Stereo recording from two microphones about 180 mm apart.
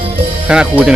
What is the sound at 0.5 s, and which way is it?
Speech, 5° right (ahead or behind).